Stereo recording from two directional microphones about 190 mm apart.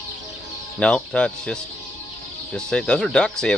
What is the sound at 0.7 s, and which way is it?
Speech, 5° left (ahead or behind).